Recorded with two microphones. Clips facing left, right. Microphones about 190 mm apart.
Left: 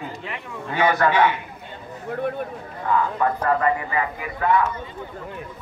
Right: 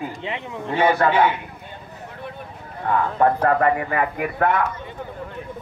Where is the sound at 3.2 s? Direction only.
55° right (ahead or behind).